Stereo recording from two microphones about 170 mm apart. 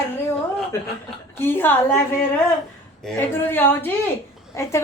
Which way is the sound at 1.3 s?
15° left (ahead or behind).